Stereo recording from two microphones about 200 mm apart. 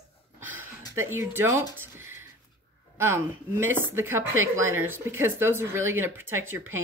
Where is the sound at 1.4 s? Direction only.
15° right (ahead or behind).